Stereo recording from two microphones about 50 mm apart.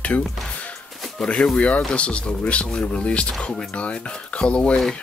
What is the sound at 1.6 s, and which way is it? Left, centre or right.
Speech, left.